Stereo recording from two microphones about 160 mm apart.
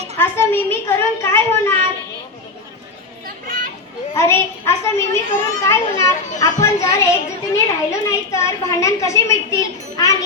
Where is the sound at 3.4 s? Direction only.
60° right (ahead or behind).